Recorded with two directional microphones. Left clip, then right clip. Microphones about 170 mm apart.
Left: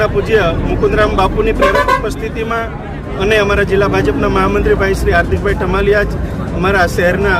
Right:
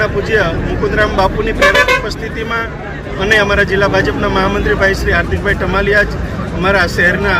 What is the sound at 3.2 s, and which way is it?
Speech, 15° left (ahead or behind).